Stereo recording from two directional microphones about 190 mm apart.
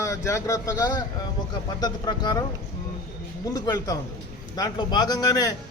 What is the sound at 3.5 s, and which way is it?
Speech, 20° left (ahead or behind).